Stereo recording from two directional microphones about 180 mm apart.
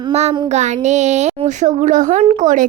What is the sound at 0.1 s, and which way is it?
Child singing, 35° right (ahead or behind).